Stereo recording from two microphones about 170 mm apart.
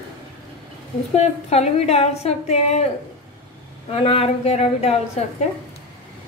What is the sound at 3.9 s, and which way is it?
A woman's voice, 35° left (ahead or behind).